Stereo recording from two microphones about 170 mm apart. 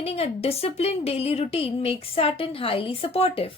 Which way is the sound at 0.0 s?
35° left (ahead or behind).